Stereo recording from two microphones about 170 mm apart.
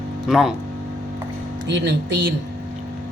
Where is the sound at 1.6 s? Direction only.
90° right.